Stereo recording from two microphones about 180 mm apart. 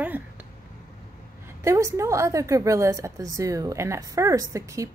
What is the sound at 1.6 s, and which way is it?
A woman's voice, 15° right (ahead or behind).